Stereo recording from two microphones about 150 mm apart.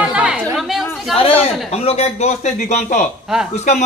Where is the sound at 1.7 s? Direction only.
45° left (ahead or behind).